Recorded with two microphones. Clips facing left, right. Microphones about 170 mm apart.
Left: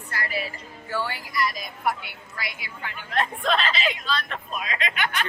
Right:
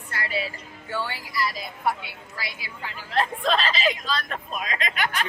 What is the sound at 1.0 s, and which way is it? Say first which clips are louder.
A woman's voice: left 2 dB; 25° right (ahead or behind).